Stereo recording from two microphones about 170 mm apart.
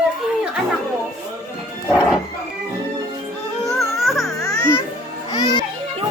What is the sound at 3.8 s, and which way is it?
Music, centre (ahead or behind).